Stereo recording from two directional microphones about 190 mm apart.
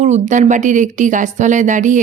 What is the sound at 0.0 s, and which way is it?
A woman's voice, 40° right (ahead or behind).